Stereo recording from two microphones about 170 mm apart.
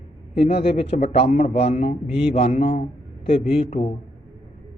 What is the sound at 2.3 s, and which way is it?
A man's voice, 40° left (ahead or behind).